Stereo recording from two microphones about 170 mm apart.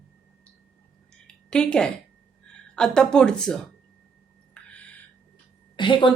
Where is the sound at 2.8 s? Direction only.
5° left (ahead or behind).